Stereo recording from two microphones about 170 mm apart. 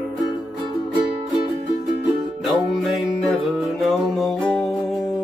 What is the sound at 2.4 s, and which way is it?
Music, centre (ahead or behind).